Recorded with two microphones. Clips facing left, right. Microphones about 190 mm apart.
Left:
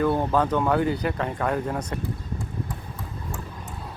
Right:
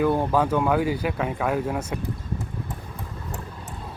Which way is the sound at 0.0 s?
10° right (ahead or behind).